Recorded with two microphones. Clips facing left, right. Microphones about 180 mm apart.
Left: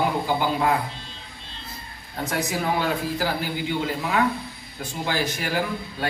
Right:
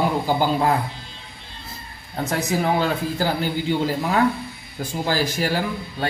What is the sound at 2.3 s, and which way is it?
A man's voice, 30° right (ahead or behind).